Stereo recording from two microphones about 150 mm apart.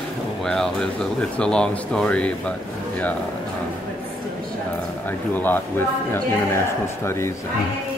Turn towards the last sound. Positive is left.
turn(degrees=15)  # may be behind; listen again after turning